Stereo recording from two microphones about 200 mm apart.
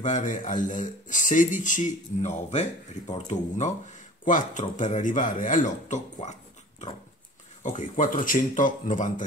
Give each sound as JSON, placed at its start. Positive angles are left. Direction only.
{"t": 0.0, "sound": "speech", "side_deg": 40}
{"t": 7.6, "sound": "speech", "side_deg": 40}